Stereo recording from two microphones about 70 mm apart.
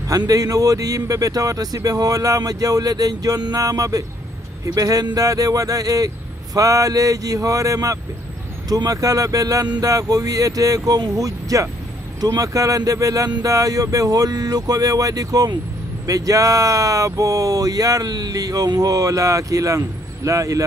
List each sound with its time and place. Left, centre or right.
0.1 s speech: right